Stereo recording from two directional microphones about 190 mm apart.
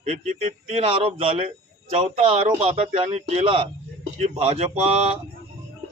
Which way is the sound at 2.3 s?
35° right (ahead or behind).